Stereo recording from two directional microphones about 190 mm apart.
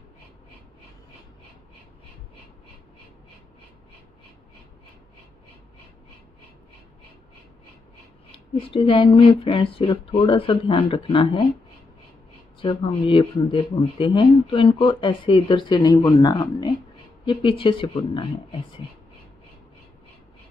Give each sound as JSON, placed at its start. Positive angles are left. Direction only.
{"t": 8.3, "sound": "speech", "side_deg": 30}
{"t": 12.5, "sound": "speech", "side_deg": 30}